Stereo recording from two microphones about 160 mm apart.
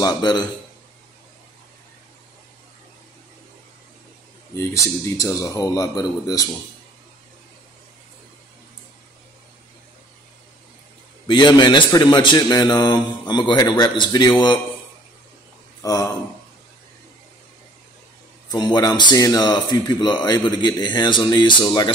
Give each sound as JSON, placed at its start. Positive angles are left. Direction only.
{"t": 0.0, "sound": "speech", "side_deg": 25}
{"t": 4.6, "sound": "speech", "side_deg": 20}
{"t": 11.2, "sound": "speech", "side_deg": 30}
{"t": 15.8, "sound": "speech", "side_deg": 20}
{"t": 18.5, "sound": "speech", "side_deg": 25}